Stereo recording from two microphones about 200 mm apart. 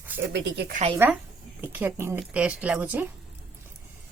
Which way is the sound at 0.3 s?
60° right (ahead or behind).